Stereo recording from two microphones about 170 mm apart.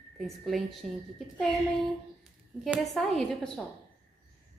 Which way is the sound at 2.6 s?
Centre (ahead or behind).